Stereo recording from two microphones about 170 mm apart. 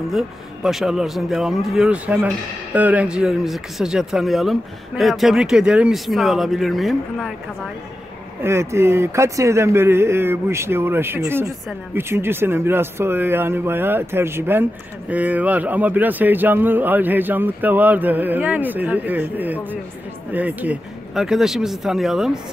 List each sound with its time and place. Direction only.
0.7 s speech: 5° right (ahead or behind)
8.4 s speech: 15° right (ahead or behind)